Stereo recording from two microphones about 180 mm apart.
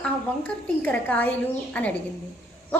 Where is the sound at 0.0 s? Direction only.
5° left (ahead or behind).